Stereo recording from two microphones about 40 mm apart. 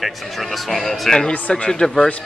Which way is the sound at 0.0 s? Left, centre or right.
Centre.